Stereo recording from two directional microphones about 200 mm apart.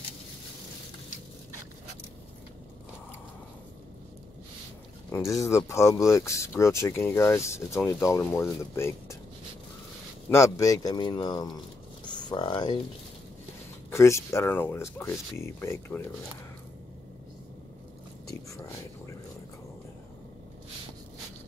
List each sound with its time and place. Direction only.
5.1 s speech: 15° left (ahead or behind)
10.3 s speech: 15° left (ahead or behind)
13.8 s speech: 15° left (ahead or behind)